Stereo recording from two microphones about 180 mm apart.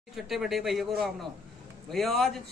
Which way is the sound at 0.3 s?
Centre (ahead or behind).